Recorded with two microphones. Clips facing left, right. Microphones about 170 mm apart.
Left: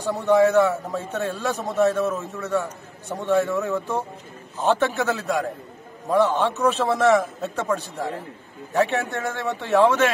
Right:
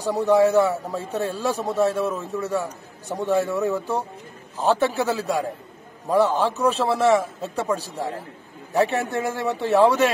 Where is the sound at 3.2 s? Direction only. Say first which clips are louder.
Even; 35° right (ahead or behind).